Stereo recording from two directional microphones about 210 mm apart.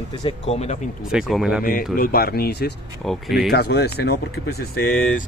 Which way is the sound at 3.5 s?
50° left (ahead or behind).